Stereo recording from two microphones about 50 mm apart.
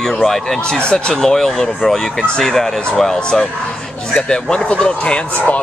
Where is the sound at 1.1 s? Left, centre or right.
Centre.